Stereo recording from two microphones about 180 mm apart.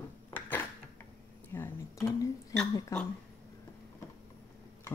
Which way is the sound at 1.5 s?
15° left (ahead or behind).